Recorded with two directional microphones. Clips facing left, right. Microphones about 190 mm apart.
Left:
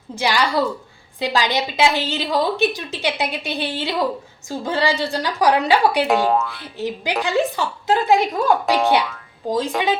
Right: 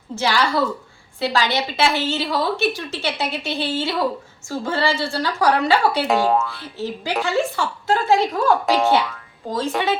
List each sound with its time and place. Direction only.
0.2 s a woman's voice: 15° left (ahead or behind)
6.1 s speech: centre (ahead or behind)
6.5 s a woman's voice: 15° left (ahead or behind)
8.6 s speech: centre (ahead or behind)
9.5 s a woman's voice: 15° left (ahead or behind)